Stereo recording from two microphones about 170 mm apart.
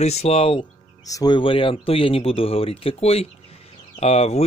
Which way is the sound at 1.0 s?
20° left (ahead or behind).